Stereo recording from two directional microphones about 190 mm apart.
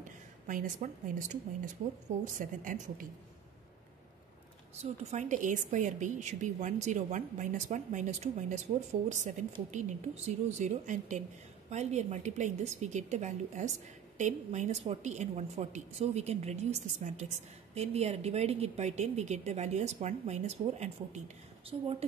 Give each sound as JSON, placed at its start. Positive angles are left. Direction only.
{"t": 0.0, "sound": "a woman's voice", "side_deg": -45}
{"t": 5.1, "sound": "a woman's voice", "side_deg": -40}
{"t": 9.7, "sound": "a woman's voice", "side_deg": -40}